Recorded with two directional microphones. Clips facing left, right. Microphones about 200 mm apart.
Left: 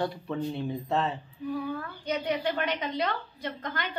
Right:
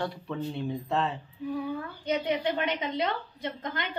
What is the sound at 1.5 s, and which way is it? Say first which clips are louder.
A woman's voice: even; 20° right (ahead or behind).